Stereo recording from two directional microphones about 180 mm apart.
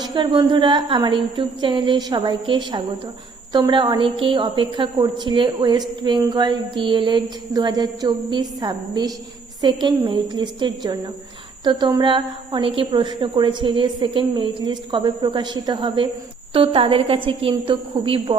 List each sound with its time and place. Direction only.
0.0 s a woman's voice: 25° right (ahead or behind)